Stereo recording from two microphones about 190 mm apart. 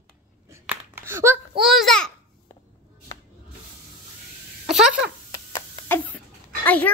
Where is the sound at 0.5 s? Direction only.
10° right (ahead or behind).